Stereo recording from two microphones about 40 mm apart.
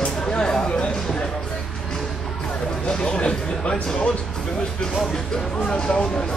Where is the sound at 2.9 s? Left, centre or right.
Left.